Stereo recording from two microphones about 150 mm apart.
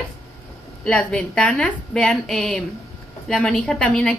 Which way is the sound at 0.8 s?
5° left (ahead or behind).